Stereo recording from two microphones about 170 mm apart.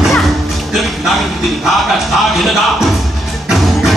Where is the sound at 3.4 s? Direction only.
Centre (ahead or behind).